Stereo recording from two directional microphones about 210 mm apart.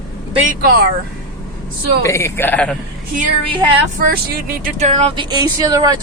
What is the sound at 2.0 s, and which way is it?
Speech, 10° left (ahead or behind).